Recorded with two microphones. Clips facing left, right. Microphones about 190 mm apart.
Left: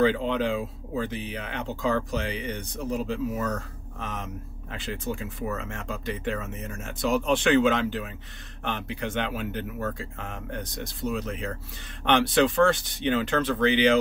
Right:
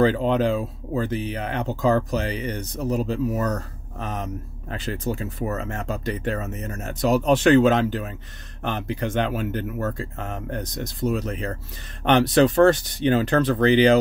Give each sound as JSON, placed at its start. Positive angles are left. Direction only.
{"t": 0.0, "sound": "speech", "side_deg": -40}